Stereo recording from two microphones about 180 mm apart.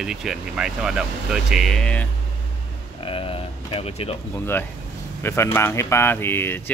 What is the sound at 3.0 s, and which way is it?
Speech, 30° left (ahead or behind).